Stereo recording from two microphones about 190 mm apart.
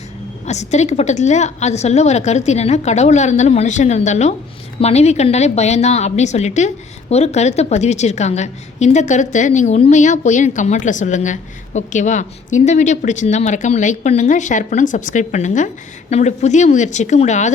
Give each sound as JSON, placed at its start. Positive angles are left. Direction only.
{"t": 0.4, "sound": "a woman's voice", "side_deg": 35}